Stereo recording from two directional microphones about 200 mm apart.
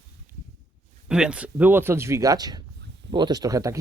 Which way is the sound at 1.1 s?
5° right (ahead or behind).